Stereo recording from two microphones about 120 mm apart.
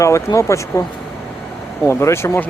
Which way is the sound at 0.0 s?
25° left (ahead or behind).